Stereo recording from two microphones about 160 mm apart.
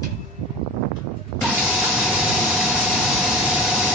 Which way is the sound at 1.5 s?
5° right (ahead or behind).